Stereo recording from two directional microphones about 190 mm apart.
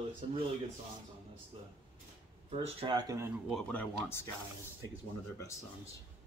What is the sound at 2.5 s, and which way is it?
Speech, 25° right (ahead or behind).